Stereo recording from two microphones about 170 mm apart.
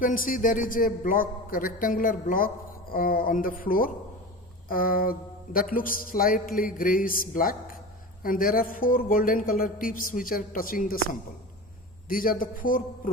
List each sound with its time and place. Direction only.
0.0 s speech: 55° left (ahead or behind)